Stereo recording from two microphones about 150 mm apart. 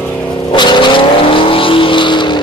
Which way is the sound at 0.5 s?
30° left (ahead or behind).